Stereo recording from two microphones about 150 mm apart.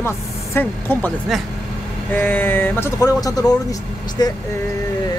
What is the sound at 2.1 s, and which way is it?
Speech, 15° left (ahead or behind).